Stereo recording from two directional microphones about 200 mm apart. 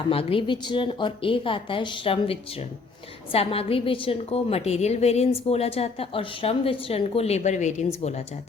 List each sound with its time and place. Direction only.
0.1 s a woman's voice: 25° left (ahead or behind)